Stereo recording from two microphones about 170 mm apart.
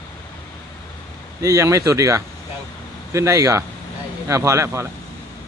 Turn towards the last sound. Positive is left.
turn(degrees=-15)  # may be behind; listen again after turning